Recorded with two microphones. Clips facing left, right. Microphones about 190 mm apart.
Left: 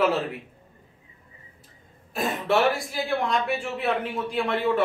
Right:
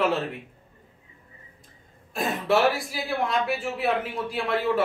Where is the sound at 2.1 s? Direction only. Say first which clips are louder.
Even; centre (ahead or behind).